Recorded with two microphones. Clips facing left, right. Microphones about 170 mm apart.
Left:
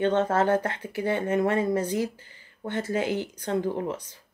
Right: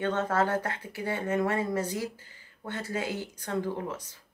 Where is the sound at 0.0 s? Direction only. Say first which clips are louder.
Left 5 dB; 20° left (ahead or behind).